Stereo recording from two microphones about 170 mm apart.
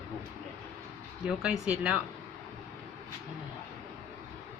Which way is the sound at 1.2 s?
5° right (ahead or behind).